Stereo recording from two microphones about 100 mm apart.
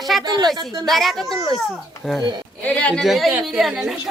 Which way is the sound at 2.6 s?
10° left (ahead or behind).